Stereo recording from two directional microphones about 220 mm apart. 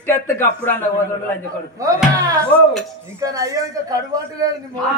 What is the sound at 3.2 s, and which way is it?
Speech, 15° right (ahead or behind).